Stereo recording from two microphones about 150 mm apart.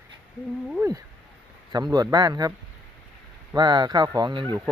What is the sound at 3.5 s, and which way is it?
Speech, 30° right (ahead or behind).